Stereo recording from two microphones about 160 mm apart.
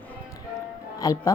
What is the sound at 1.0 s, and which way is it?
Speech, 20° left (ahead or behind).